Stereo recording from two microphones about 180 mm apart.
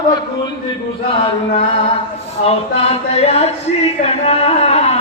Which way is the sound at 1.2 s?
30° left (ahead or behind).